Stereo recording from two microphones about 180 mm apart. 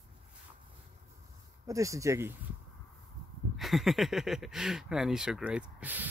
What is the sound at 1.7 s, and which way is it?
Speech, 20° right (ahead or behind).